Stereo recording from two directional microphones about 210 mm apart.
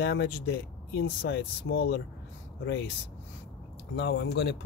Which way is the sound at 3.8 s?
50° left (ahead or behind).